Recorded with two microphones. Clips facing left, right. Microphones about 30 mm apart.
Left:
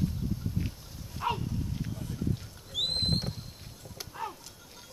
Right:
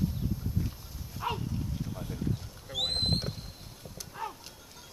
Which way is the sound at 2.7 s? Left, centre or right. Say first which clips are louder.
Even; centre.